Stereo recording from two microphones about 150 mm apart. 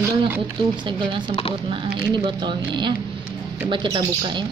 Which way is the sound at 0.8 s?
35° right (ahead or behind).